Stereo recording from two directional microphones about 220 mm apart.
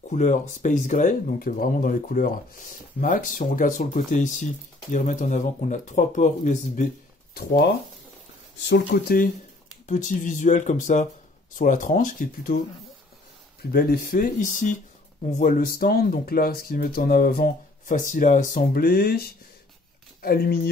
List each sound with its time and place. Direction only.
0.1 s speech: 35° left (ahead or behind)
7.3 s speech: 45° left (ahead or behind)
13.7 s speech: 45° left (ahead or behind)